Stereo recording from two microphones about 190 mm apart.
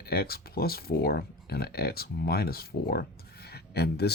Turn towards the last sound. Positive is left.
turn(degrees=60)  # may be behind; listen again after turning